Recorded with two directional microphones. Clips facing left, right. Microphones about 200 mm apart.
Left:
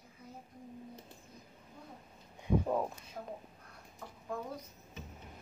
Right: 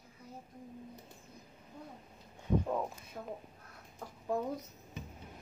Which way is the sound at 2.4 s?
10° left (ahead or behind).